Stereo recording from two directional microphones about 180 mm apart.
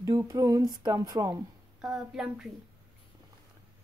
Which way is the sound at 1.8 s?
5° right (ahead or behind).